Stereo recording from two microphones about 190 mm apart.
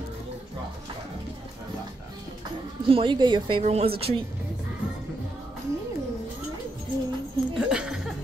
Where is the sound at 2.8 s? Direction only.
25° right (ahead or behind).